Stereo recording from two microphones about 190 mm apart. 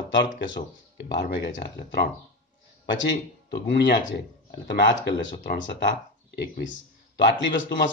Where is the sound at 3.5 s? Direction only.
65° left (ahead or behind).